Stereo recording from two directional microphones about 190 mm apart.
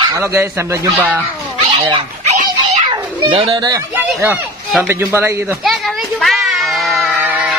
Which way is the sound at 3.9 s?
10° right (ahead or behind).